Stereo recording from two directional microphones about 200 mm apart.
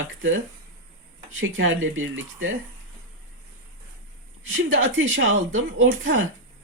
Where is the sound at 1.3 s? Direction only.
75° right (ahead or behind).